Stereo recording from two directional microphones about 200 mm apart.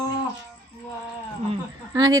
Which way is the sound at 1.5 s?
20° right (ahead or behind).